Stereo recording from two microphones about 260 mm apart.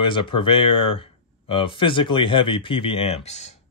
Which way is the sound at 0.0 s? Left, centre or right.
Centre.